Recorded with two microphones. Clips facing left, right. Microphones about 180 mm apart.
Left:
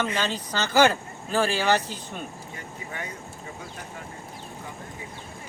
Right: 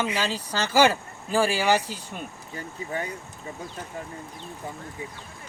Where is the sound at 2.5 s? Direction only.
35° right (ahead or behind).